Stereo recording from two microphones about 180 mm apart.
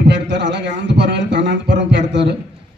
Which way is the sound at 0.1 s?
75° right (ahead or behind).